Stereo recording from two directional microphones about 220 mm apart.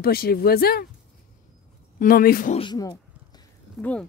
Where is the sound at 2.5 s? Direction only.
20° left (ahead or behind).